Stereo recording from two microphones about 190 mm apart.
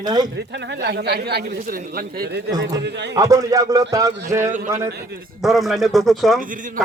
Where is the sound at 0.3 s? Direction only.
65° right (ahead or behind).